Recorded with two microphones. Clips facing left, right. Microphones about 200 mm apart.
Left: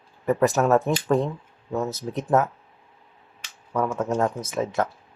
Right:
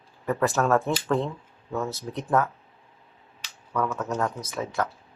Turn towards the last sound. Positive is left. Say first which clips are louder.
# left 4 dB
turn(degrees=25)  # may be behind; listen again after turning